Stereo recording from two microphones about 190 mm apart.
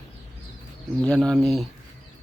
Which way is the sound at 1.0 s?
5° left (ahead or behind).